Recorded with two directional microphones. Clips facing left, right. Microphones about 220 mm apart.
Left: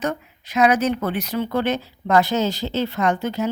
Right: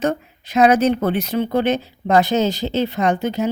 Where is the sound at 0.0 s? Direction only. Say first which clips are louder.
Right 5 dB; 30° right (ahead or behind).